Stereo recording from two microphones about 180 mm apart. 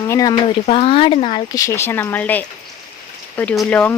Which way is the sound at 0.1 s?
20° left (ahead or behind).